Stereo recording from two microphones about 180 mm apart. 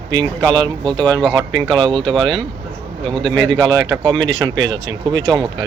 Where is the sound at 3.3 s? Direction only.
90° right.